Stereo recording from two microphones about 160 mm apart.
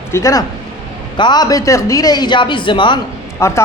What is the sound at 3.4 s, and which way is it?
Speech, 15° left (ahead or behind).